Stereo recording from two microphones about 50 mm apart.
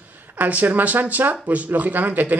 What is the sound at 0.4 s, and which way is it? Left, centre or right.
Speech, right.